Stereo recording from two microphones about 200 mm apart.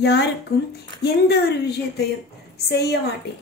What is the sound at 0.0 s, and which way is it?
A woman's voice, 55° left (ahead or behind).